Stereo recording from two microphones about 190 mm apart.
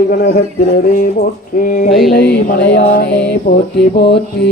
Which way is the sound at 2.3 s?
65° left (ahead or behind).